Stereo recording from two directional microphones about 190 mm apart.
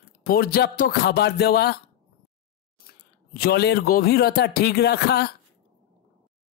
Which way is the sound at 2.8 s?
55° left (ahead or behind).